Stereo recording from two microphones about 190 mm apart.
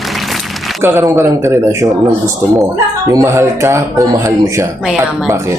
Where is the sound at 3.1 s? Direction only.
15° right (ahead or behind).